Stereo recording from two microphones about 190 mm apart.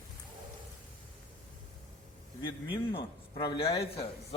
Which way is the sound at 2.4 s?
25° left (ahead or behind).